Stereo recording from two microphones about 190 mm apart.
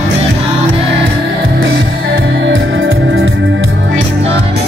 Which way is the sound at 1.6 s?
85° right.